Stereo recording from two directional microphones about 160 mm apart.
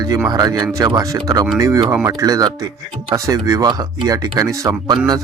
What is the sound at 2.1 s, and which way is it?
Speech, 25° right (ahead or behind).